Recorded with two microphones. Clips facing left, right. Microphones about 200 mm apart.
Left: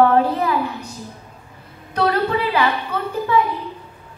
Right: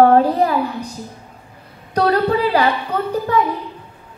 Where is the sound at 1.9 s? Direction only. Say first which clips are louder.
Right 3 dB; 35° right (ahead or behind).